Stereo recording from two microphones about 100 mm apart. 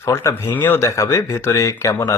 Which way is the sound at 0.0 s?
30° left (ahead or behind).